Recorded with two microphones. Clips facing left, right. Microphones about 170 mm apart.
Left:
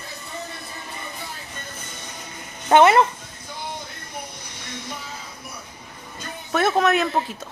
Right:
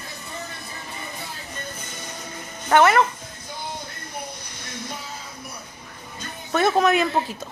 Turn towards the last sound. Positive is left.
turn(degrees=0)  # may be behind; listen again after turning